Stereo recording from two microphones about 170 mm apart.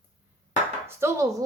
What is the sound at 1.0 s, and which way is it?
Speech, 15° right (ahead or behind).